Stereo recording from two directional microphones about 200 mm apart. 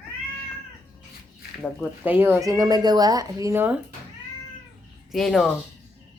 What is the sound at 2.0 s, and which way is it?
Speech, 10° right (ahead or behind).